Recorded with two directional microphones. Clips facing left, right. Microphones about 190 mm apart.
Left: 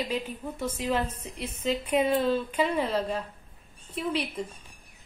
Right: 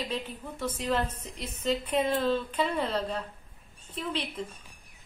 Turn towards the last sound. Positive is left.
turn(degrees=10)  # may be behind; listen again after turning